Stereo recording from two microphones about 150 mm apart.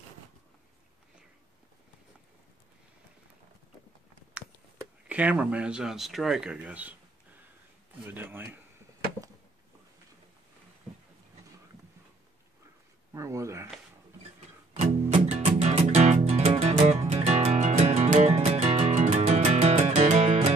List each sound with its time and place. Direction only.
5.0 s speech: 10° right (ahead or behind)
8.0 s speech: 10° right (ahead or behind)
13.1 s a sound: 20° right (ahead or behind)
15.1 s music: 45° right (ahead or behind)